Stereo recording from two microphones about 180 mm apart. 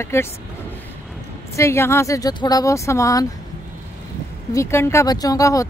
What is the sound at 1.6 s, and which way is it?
Speech, 15° left (ahead or behind).